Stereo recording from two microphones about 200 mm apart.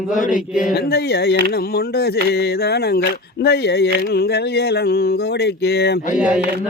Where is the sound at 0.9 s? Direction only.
55° left (ahead or behind).